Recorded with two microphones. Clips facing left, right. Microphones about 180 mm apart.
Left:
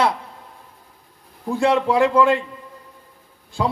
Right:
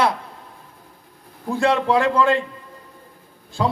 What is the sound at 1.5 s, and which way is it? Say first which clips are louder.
Speech: left 1 dB; 15° left (ahead or behind).